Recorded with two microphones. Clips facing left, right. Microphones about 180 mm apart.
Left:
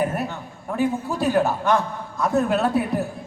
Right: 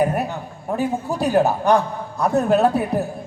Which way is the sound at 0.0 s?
40° right (ahead or behind).